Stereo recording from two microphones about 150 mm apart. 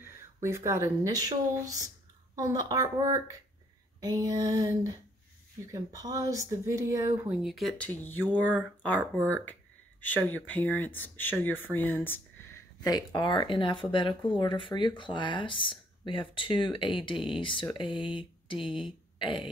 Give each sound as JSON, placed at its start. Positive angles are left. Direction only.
{"t": 0.0, "sound": "speech", "side_deg": -15}
{"t": 7.2, "sound": "speech", "side_deg": 0}
{"t": 9.0, "sound": "speech", "side_deg": -15}
{"t": 9.4, "sound": "speech", "side_deg": 10}
{"t": 12.8, "sound": "speech", "side_deg": 30}